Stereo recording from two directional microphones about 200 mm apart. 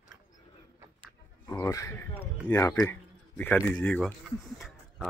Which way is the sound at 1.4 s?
15° left (ahead or behind).